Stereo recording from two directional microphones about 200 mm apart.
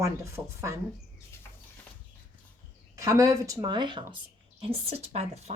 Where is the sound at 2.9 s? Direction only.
15° right (ahead or behind); by 5.5 s 35° right (ahead or behind).